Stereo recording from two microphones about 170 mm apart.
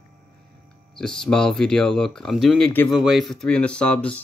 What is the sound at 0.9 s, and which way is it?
Speech, 5° left (ahead or behind).